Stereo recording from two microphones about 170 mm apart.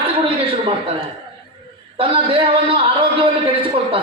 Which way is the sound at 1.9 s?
30° right (ahead or behind).